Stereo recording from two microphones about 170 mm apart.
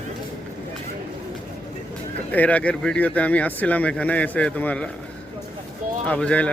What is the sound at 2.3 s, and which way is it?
Speech, 10° left (ahead or behind).